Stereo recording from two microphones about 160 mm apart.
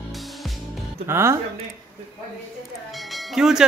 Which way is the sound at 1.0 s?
15° right (ahead or behind).